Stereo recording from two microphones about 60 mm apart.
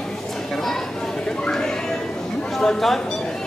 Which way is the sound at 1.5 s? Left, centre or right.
Centre.